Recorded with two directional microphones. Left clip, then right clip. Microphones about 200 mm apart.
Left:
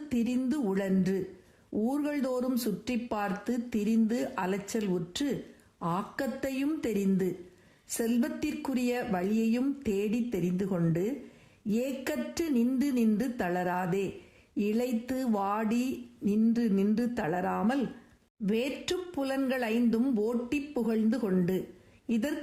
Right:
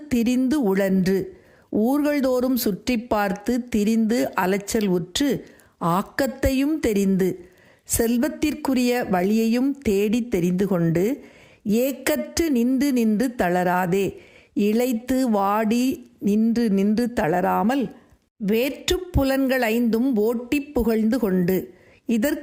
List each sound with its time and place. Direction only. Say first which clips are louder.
0.1 s a woman's voice: right 10 dB; 35° right (ahead or behind)